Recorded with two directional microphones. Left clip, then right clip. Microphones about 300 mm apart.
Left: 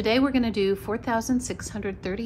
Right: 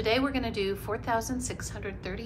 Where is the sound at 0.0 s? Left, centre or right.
Left.